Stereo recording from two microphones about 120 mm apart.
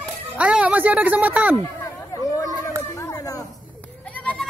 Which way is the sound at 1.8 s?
35° left (ahead or behind).